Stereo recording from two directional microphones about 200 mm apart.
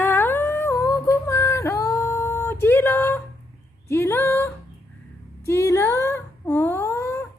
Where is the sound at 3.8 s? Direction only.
15° left (ahead or behind).